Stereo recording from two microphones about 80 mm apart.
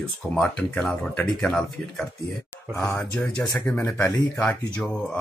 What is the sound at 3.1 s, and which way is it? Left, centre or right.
Speech, centre.